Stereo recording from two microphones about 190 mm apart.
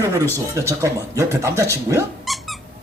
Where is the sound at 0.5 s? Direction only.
15° right (ahead or behind).